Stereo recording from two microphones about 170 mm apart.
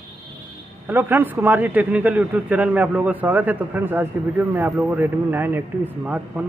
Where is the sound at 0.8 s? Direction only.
10° right (ahead or behind).